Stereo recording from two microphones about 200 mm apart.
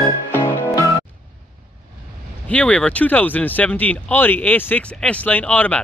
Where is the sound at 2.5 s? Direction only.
5° left (ahead or behind).